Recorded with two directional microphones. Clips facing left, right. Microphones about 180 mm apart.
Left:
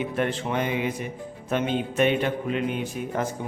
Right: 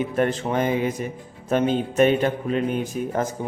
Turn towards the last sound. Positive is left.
turn(degrees=-45)  # may be behind; listen again after turning